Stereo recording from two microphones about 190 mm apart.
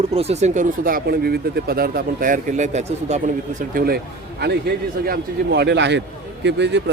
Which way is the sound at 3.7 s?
50° right (ahead or behind).